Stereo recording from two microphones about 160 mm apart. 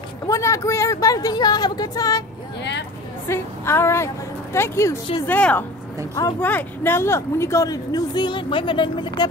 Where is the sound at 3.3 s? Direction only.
15° left (ahead or behind).